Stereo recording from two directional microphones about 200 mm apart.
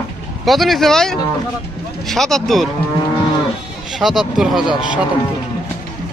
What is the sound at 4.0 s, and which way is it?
Speech, centre (ahead or behind).